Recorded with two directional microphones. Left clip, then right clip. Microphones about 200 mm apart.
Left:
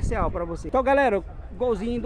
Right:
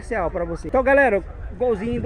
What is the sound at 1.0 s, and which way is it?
Speech, 20° left (ahead or behind).